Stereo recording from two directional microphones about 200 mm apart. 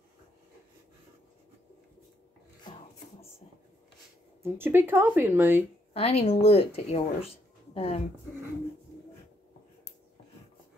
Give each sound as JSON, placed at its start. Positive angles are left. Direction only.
{"t": 4.4, "sound": "speech", "side_deg": -10}
{"t": 5.9, "sound": "speech", "side_deg": 30}